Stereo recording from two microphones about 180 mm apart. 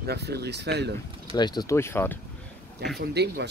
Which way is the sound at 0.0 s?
65° right (ahead or behind).